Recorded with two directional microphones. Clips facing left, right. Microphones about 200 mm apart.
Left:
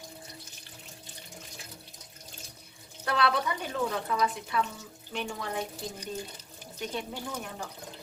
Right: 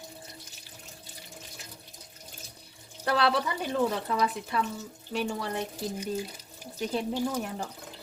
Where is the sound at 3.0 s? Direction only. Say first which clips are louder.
Right 2 dB; 30° right (ahead or behind).